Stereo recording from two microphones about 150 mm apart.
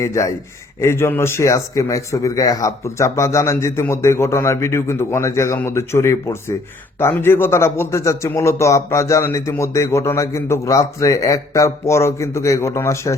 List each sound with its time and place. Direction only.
0.0 s a man's voice: 20° left (ahead or behind)